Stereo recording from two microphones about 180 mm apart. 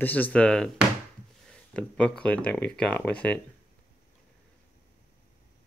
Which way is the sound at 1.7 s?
5° left (ahead or behind).